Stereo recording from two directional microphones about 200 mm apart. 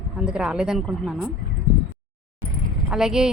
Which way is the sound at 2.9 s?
5° right (ahead or behind).